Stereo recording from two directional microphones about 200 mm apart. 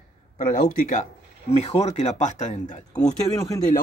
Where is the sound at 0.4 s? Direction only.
45° left (ahead or behind).